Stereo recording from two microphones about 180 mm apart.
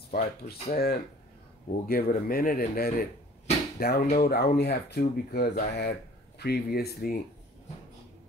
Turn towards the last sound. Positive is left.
turn(degrees=55)  # may be behind; listen again after turning